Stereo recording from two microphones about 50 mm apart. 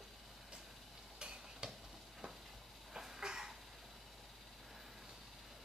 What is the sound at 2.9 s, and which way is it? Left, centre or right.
Cough, centre.